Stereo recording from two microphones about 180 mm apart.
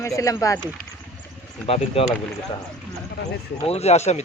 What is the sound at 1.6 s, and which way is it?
Speech, 35° left (ahead or behind).